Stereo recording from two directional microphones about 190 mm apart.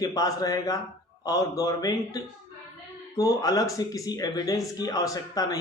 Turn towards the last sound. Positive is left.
turn(degrees=20)  # may be behind; listen again after turning